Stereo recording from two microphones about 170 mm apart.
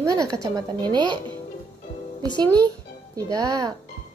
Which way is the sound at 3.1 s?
20° right (ahead or behind).